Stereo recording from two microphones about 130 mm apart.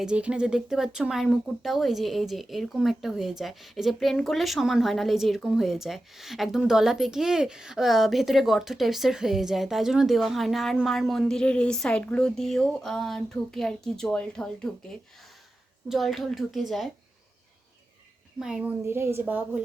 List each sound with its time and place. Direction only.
0.0 s speech: 5° right (ahead or behind)
15.9 s speech: centre (ahead or behind)
18.3 s speech: 5° right (ahead or behind)
18.9 s a woman's voice: 20° right (ahead or behind)